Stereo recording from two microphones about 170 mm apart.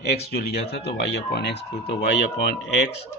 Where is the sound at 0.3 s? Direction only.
70° left (ahead or behind).